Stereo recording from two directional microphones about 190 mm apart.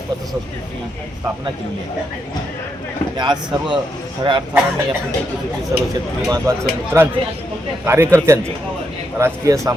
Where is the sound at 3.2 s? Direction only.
20° right (ahead or behind).